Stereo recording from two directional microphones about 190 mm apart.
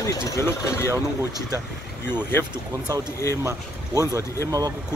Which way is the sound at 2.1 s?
10° left (ahead or behind).